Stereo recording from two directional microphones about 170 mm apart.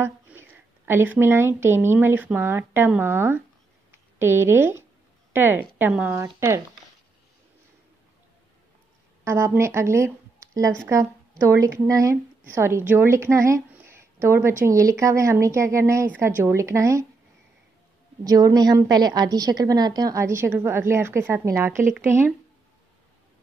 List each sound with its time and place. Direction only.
0.0 s a woman's voice: 15° right (ahead or behind)
9.2 s a woman's voice: 15° right (ahead or behind)
18.2 s a woman's voice: 20° right (ahead or behind)